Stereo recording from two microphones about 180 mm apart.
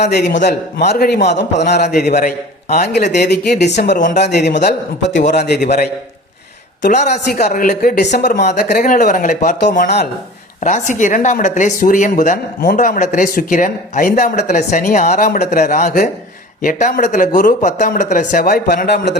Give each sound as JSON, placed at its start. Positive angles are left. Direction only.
{"t": 0.1, "sound": "a man's voice", "side_deg": 65}
{"t": 2.1, "sound": "a man's voice", "side_deg": 45}
{"t": 3.9, "sound": "speech", "side_deg": 45}
{"t": 4.2, "sound": "a man's voice", "side_deg": 70}
{"t": 5.3, "sound": "a man's voice", "side_deg": 70}
{"t": 6.8, "sound": "a woman's voice", "side_deg": 40}
{"t": 9.7, "sound": "speech", "side_deg": 60}
{"t": 10.6, "sound": "speech", "side_deg": 45}